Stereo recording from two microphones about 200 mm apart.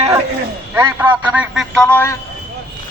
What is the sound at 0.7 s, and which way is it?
A man's voice, 10° right (ahead or behind).